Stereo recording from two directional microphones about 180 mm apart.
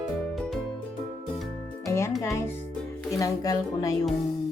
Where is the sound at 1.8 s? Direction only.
15° left (ahead or behind).